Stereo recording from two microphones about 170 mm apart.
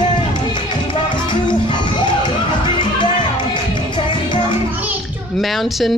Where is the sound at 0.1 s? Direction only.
30° left (ahead or behind).